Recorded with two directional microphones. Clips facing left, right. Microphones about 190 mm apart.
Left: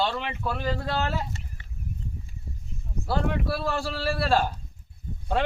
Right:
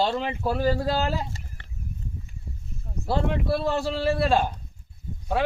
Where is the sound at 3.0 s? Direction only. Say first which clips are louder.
Right 2 dB; 25° right (ahead or behind).